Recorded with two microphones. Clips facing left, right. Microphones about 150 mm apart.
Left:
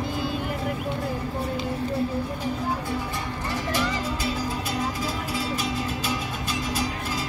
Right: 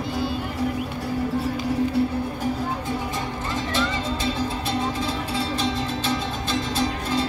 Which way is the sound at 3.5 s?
25° right (ahead or behind).